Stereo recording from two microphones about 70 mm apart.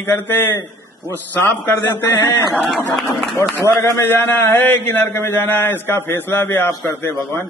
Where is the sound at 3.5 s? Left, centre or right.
Left.